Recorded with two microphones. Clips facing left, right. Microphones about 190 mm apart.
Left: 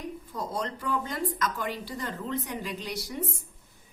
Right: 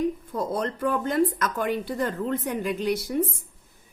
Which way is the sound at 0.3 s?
55° right (ahead or behind).